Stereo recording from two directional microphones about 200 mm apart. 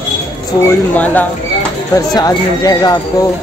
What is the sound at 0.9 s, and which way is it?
Speech, 10° left (ahead or behind).